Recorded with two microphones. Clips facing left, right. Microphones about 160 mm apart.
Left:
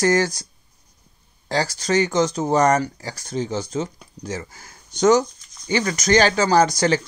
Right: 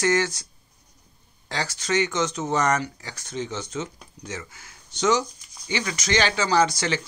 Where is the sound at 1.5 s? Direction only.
35° left (ahead or behind).